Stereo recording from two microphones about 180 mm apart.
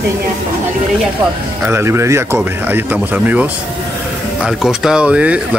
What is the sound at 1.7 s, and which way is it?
Speech, 15° right (ahead or behind).